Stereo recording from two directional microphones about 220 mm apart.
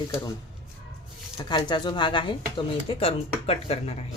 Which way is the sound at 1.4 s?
20° left (ahead or behind).